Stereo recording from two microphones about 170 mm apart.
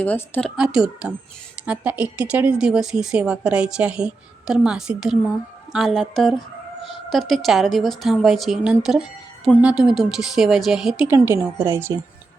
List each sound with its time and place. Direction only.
0.0 s speech: 10° left (ahead or behind)
0.5 s speech: 5° right (ahead or behind)
11.9 s speech: 20° right (ahead or behind)